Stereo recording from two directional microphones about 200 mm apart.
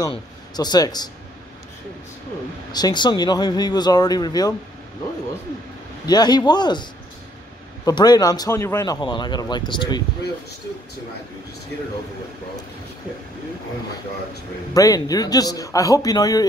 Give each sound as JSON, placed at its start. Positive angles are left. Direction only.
{"t": 0.0, "sound": "a man's voice", "side_deg": 20}
{"t": 2.7, "sound": "speech", "side_deg": 20}
{"t": 6.0, "sound": "speech", "side_deg": 20}
{"t": 14.7, "sound": "a man's voice", "side_deg": 15}